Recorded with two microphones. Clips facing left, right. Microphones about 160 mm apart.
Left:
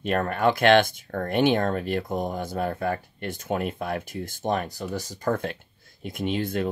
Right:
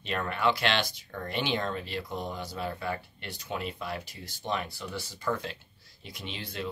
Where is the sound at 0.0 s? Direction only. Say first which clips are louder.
Left 6 dB; 50° left (ahead or behind).